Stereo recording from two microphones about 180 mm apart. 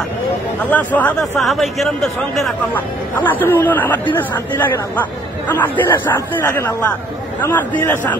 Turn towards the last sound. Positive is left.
turn(degrees=10)  # may be behind; listen again after turning